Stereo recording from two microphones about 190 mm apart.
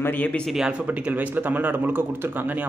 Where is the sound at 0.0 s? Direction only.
10° left (ahead or behind).